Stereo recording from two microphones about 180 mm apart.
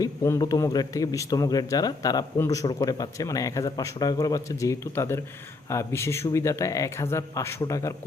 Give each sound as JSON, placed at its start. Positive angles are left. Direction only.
{"t": 0.0, "sound": "a man's voice", "side_deg": 20}